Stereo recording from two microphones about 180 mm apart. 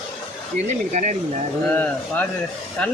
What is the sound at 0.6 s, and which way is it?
Speech, 40° right (ahead or behind).